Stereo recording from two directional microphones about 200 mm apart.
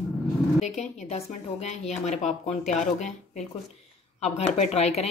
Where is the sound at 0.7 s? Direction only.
35° left (ahead or behind).